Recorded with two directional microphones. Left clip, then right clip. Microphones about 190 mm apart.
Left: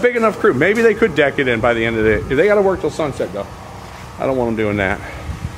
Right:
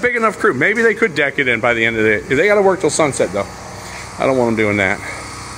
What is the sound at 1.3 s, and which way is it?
Speech, 70° left (ahead or behind).